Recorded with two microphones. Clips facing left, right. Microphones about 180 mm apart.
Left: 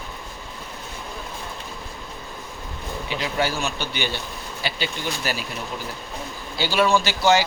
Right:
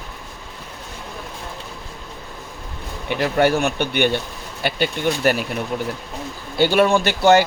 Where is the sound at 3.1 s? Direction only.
60° right (ahead or behind).